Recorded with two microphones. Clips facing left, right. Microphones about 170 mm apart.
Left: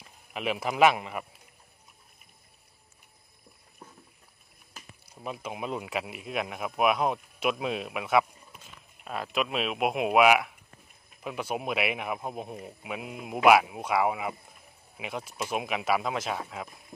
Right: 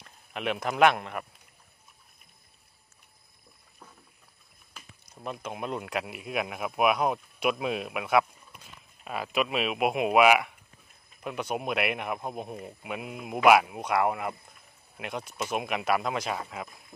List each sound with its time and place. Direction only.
0.0 s a man's voice: 5° left (ahead or behind)
5.1 s speech: 5° left (ahead or behind)